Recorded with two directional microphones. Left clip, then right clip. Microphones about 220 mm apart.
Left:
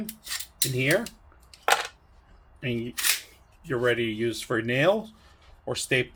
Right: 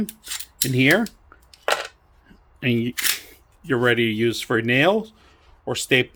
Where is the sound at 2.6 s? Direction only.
45° right (ahead or behind).